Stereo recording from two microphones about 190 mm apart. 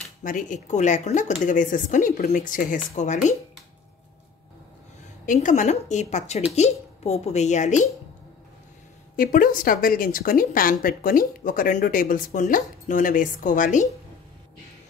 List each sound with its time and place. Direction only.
0.2 s a woman's voice: 45° left (ahead or behind)
5.2 s a woman's voice: 40° left (ahead or behind)
9.1 s speech: 45° left (ahead or behind)